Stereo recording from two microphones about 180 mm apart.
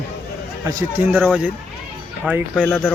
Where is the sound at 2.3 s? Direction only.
10° right (ahead or behind).